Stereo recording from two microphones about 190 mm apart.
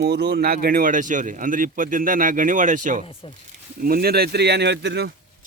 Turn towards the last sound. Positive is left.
turn(degrees=-65)  # may be behind; listen again after turning